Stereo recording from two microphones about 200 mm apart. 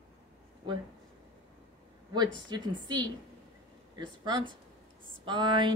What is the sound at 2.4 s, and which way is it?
A woman's voice, 20° right (ahead or behind).